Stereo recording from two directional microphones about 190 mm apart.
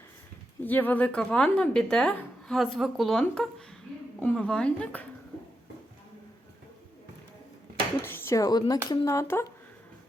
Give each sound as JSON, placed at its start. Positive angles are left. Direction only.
{"t": 0.6, "sound": "a woman's voice", "side_deg": 10}
{"t": 8.0, "sound": "a sound", "side_deg": 10}
{"t": 8.9, "sound": "a woman's voice", "side_deg": 20}